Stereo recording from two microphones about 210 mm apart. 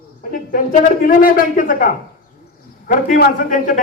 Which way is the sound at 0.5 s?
40° left (ahead or behind).